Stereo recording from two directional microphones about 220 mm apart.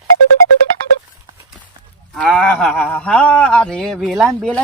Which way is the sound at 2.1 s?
5° left (ahead or behind).